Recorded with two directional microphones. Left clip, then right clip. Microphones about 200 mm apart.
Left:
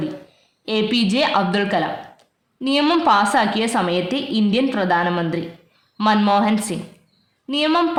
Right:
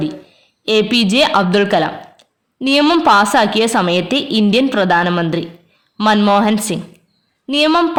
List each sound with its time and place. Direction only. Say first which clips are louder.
0.6 s a woman's voice: right 6 dB; 35° right (ahead or behind)